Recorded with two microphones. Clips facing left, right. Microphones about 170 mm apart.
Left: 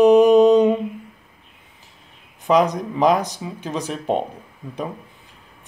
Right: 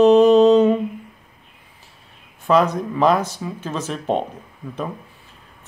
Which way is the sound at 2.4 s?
15° left (ahead or behind).